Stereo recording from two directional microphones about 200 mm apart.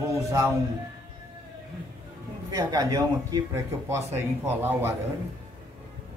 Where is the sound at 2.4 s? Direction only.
20° right (ahead or behind).